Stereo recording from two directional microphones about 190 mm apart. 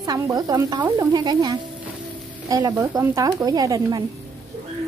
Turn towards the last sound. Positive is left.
turn(degrees=-20)  # may be behind; listen again after turning